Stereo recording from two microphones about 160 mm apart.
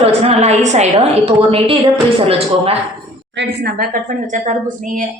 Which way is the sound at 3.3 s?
90° right.